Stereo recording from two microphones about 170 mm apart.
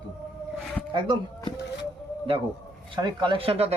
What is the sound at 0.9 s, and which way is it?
Speech, 30° right (ahead or behind).